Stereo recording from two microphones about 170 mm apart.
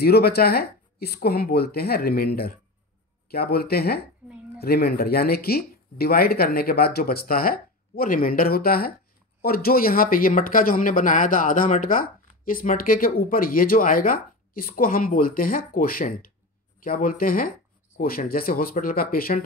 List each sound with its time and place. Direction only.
0.0 s speech: 65° left (ahead or behind)